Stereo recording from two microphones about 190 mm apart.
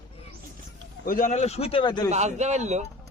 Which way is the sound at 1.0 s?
45° left (ahead or behind).